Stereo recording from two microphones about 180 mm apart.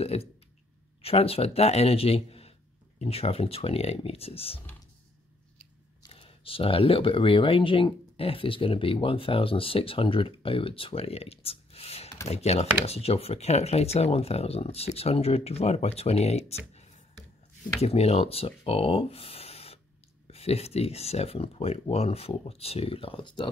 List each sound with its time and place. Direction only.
0.0 s speech: 35° left (ahead or behind)
6.0 s speech: 30° left (ahead or behind)